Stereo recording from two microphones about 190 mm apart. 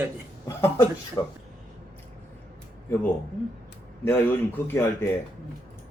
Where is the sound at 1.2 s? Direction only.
20° left (ahead or behind).